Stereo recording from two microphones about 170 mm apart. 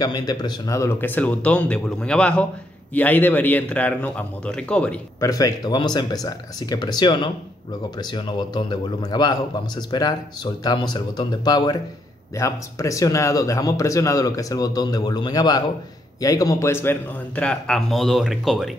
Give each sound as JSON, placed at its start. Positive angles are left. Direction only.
{"t": 0.0, "sound": "speech", "side_deg": 25}
{"t": 5.2, "sound": "a man's voice", "side_deg": 20}